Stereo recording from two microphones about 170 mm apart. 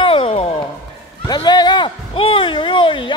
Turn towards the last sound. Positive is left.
turn(degrees=30)  # may be behind; listen again after turning